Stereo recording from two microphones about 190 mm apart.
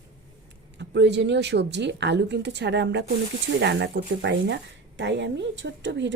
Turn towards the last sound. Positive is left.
turn(degrees=-70)  # may be behind; listen again after turning